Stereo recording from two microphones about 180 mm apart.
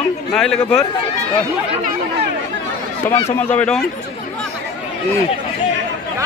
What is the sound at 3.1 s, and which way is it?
Speech, 15° left (ahead or behind).